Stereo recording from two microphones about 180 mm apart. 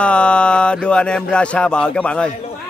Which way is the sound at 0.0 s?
5° left (ahead or behind).